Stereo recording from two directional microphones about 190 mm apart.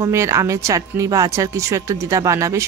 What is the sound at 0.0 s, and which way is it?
Speech, 15° right (ahead or behind).